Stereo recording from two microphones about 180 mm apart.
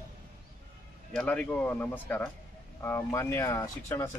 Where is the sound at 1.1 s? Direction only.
5° left (ahead or behind).